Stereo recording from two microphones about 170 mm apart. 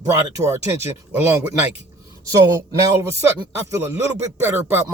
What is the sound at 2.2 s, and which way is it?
Speech, 20° right (ahead or behind).